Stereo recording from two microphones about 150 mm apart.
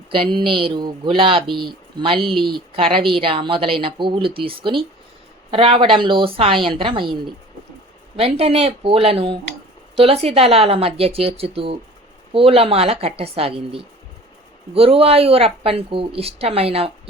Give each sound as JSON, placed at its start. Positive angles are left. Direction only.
{"t": 0.1, "sound": "a woman's voice", "side_deg": -35}